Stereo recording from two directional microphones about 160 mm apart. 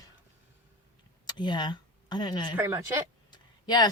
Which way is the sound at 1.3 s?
25° left (ahead or behind).